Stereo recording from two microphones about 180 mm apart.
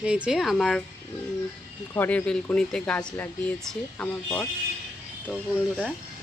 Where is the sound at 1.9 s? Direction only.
10° left (ahead or behind).